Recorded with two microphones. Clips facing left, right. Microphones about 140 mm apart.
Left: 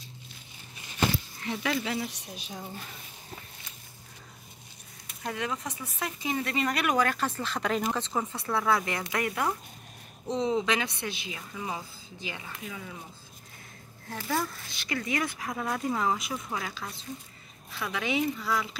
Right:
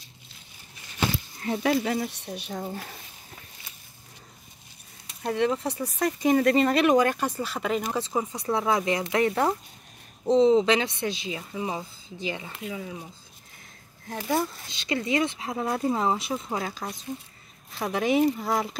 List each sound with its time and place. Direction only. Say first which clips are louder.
1.4 s speech: right 8 dB; 40° right (ahead or behind)
2.3 s speech: right 7 dB; 65° right (ahead or behind)
2.6 s speech: right 6 dB; 45° right (ahead or behind)
5.2 s speech: right 8 dB; 35° right (ahead or behind)
14.1 s speech: right 4 dB; 20° right (ahead or behind)
17.7 s speech: right 7 dB; 45° right (ahead or behind)